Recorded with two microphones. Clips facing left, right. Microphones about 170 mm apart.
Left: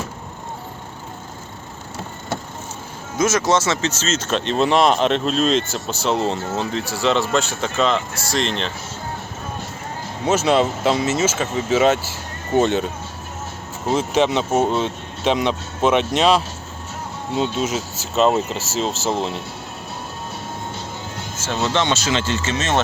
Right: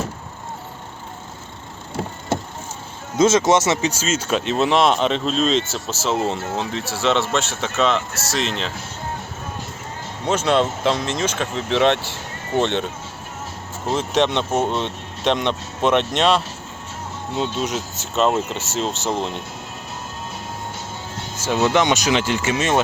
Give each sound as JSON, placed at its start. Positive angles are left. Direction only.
{"t": 3.2, "sound": "speech", "side_deg": -25}
{"t": 3.7, "sound": "speech", "side_deg": -15}
{"t": 10.2, "sound": "speech", "side_deg": 5}
{"t": 13.8, "sound": "speech", "side_deg": 0}
{"t": 21.4, "sound": "speech", "side_deg": -15}